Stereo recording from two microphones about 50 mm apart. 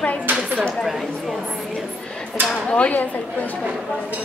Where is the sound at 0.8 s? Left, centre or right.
Centre.